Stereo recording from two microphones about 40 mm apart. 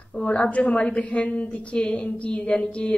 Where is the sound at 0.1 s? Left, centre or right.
Left.